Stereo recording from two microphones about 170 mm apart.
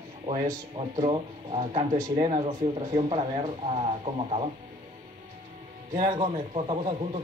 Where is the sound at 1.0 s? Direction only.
30° right (ahead or behind).